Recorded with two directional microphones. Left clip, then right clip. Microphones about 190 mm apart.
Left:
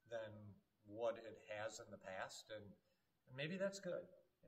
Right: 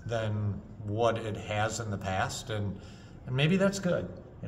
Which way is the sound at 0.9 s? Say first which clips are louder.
Right 17 dB; centre (ahead or behind).